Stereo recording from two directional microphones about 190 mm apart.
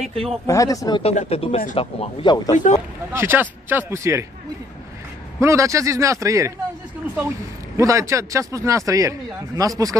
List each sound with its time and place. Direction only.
0.0 s speech: 30° right (ahead or behind)
0.5 s speech: 15° left (ahead or behind)
2.5 s speech: 40° left (ahead or behind)
3.1 s a man's voice: 10° right (ahead or behind)
5.4 s a man's voice: 15° right (ahead or behind)
7.7 s a man's voice: 15° right (ahead or behind)